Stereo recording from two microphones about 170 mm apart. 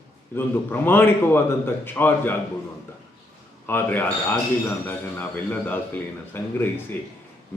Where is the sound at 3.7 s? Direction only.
10° left (ahead or behind).